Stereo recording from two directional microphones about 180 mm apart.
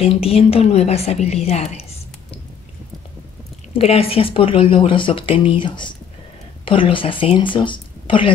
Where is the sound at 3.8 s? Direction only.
35° left (ahead or behind).